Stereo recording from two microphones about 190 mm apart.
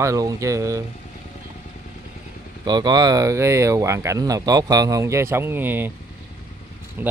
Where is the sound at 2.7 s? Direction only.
20° right (ahead or behind).